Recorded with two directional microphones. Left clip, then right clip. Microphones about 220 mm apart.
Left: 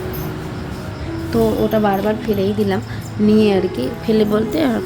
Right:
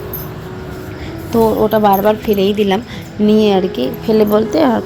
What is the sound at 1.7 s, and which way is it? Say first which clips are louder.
Speech: right 6 dB; 15° right (ahead or behind).